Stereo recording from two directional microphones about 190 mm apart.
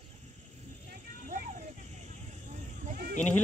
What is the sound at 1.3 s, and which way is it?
Vehicle, 40° right (ahead or behind).